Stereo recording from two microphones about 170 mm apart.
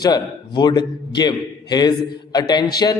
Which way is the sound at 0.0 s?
25° left (ahead or behind).